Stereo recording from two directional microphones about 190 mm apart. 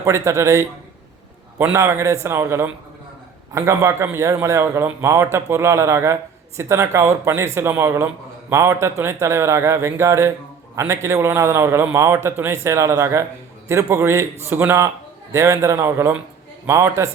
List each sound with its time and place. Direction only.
0.0 s a man's voice: 15° right (ahead or behind)